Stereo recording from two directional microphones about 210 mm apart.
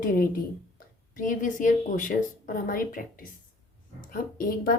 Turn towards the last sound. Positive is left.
turn(degrees=45)  # may be behind; listen again after turning